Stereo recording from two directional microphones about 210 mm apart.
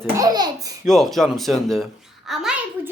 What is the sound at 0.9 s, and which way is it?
A child's voice, centre (ahead or behind).